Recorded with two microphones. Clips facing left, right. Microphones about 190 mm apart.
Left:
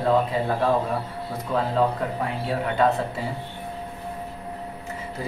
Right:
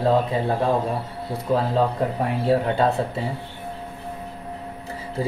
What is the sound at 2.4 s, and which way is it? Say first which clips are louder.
Speech: right 8 dB; 35° right (ahead or behind).